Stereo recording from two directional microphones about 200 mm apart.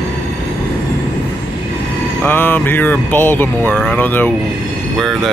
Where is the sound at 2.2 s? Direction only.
10° left (ahead or behind).